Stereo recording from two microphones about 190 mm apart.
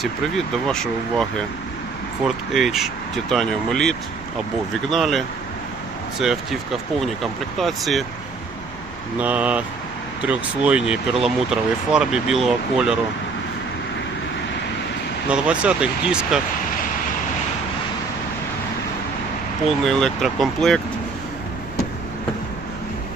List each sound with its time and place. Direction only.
0.0 s speech: centre (ahead or behind)
2.2 s speech: centre (ahead or behind)
9.1 s speech: 5° right (ahead or behind)
15.3 s speech: 5° right (ahead or behind)
19.6 s speech: 5° left (ahead or behind)